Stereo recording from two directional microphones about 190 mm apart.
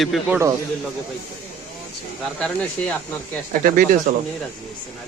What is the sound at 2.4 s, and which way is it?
Speech, 5° left (ahead or behind).